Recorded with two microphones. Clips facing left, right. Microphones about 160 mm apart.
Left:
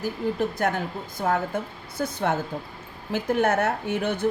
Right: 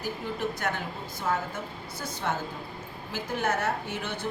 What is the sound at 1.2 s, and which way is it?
A woman's voice, 55° left (ahead or behind).